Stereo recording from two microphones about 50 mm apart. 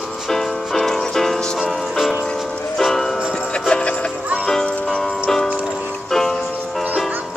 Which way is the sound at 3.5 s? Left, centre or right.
Centre.